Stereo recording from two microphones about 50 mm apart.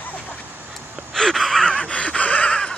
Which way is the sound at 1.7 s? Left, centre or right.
Left.